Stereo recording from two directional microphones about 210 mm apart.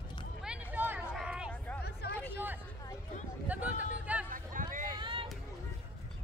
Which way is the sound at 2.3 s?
10° right (ahead or behind).